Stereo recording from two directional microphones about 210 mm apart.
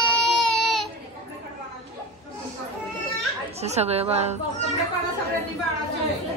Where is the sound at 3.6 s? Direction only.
30° right (ahead or behind).